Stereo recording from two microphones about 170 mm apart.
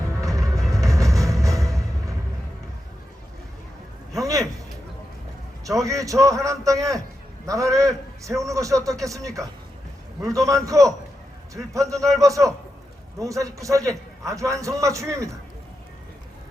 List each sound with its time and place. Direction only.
0.2 s music: 20° right (ahead or behind)
4.2 s a sound: 20° right (ahead or behind)
5.6 s a man's voice: 20° right (ahead or behind)